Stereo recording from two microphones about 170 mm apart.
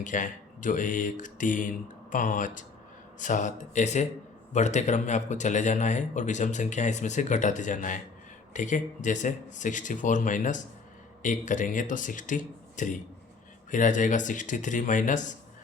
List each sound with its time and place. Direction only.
0.0 s speech: 50° left (ahead or behind)